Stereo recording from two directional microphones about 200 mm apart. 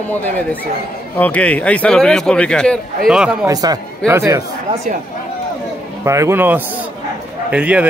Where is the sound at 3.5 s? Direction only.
20° right (ahead or behind).